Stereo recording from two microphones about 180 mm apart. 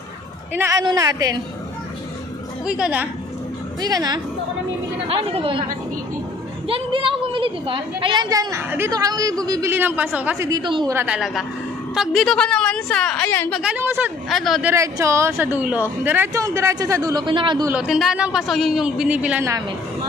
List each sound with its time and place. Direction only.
0.6 s a woman's voice: 15° right (ahead or behind)
2.6 s a man's voice: 5° right (ahead or behind)
3.8 s a woman's voice: 20° right (ahead or behind)
5.0 s speech: 35° right (ahead or behind)
6.7 s a woman's voice: 30° right (ahead or behind); by 10.5 s 10° right (ahead or behind)
10.5 s a woman's voice: 25° right (ahead or behind)
11.0 s a man's voice: 5° right (ahead or behind)
13.6 s a woman's voice: 10° right (ahead or behind)
14.7 s a woman's voice: 15° right (ahead or behind)
17.6 s a man's voice: 5° right (ahead or behind)